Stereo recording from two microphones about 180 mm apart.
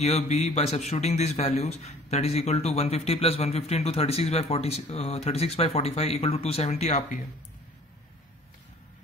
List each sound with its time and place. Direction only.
0.0 s a man's voice: 35° left (ahead or behind)